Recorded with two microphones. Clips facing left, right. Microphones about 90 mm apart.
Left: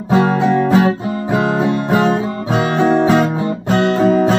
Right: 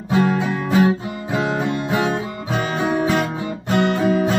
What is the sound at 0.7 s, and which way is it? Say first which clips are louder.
Music: left 4 dB; 55° left (ahead or behind).